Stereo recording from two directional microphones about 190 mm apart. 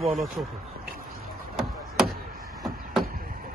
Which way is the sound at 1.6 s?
Centre (ahead or behind).